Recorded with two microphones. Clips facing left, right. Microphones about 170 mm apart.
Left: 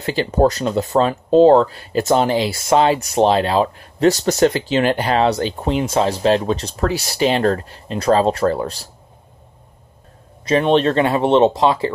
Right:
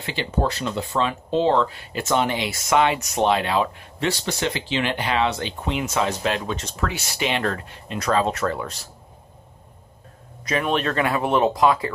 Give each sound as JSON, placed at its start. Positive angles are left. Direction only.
{"t": 0.0, "sound": "speech", "side_deg": 40}
{"t": 10.4, "sound": "speech", "side_deg": 30}